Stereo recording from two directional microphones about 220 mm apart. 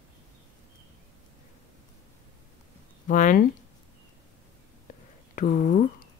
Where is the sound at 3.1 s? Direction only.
35° left (ahead or behind).